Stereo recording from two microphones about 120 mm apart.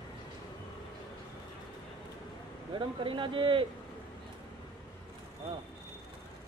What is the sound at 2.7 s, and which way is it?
Speech, 45° right (ahead or behind).